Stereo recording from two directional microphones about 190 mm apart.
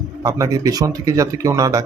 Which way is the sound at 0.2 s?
15° right (ahead or behind).